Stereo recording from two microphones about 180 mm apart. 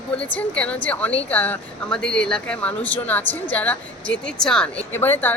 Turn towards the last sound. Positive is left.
turn(degrees=10)  # may be behind; listen again after turning